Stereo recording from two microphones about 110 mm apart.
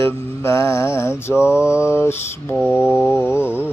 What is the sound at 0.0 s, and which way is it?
Mantra, 25° left (ahead or behind).